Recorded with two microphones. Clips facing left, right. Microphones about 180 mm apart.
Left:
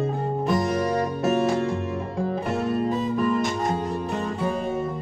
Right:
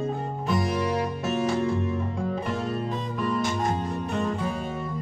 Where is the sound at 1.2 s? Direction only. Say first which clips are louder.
Left 6 dB; 50° left (ahead or behind).